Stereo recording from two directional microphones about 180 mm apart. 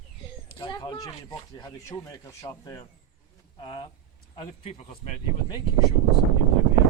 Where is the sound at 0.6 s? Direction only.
25° left (ahead or behind).